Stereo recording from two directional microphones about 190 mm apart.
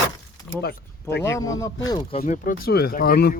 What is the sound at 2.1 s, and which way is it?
Speech, 40° left (ahead or behind).